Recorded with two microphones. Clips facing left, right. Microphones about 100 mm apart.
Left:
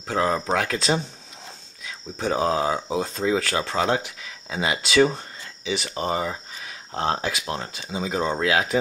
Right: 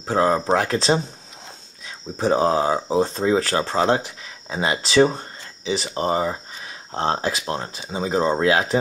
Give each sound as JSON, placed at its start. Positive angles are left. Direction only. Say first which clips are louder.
{"t": 0.0, "sound": "speech", "louder": "right 4 dB", "side_deg": -35}